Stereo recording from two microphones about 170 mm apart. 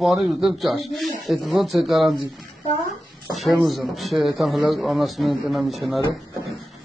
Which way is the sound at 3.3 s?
Centre (ahead or behind).